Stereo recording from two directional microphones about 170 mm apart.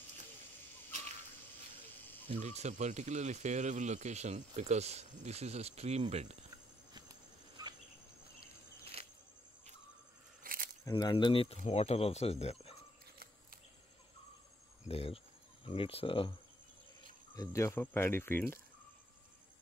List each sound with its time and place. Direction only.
2.2 s speech: 40° right (ahead or behind)
7.6 s cricket: 25° right (ahead or behind)
9.0 s a sound: 35° right (ahead or behind)
10.4 s a sound: 55° right (ahead or behind)
10.9 s speech: 25° left (ahead or behind)
14.9 s speech: 35° left (ahead or behind)
17.4 s speech: 20° left (ahead or behind)